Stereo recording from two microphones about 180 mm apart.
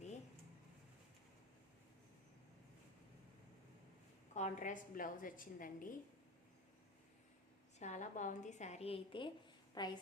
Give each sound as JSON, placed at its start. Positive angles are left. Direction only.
{"t": 4.4, "sound": "a woman's voice", "side_deg": 45}
{"t": 7.8, "sound": "a woman's voice", "side_deg": 40}